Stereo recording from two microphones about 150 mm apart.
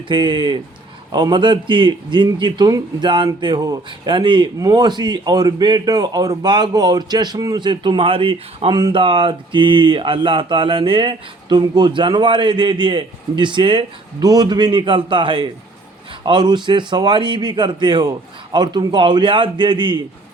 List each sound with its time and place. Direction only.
0.1 s a man's voice: 30° right (ahead or behind)